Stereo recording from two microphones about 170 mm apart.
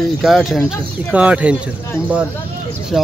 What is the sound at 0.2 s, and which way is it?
Speech, centre (ahead or behind).